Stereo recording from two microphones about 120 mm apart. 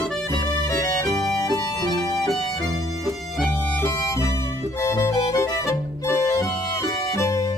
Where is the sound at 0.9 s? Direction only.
25° left (ahead or behind).